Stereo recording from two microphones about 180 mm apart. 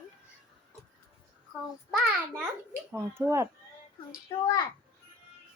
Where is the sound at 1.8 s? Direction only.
Centre (ahead or behind).